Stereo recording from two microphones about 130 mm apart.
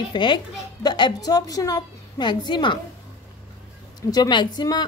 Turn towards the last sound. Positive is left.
turn(degrees=35)  # may be behind; listen again after turning